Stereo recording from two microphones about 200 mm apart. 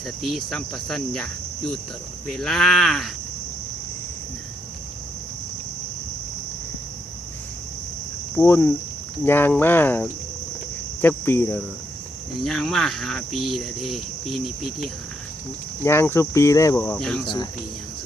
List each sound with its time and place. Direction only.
0.2 s cricket: centre (ahead or behind)
8.4 s cricket: 5° left (ahead or behind)
12.4 s cricket: centre (ahead or behind)
15.8 s cricket: 10° left (ahead or behind)
17.2 s speech: 20° left (ahead or behind)